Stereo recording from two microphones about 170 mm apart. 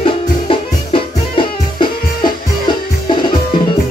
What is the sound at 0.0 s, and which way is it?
Music, 30° left (ahead or behind).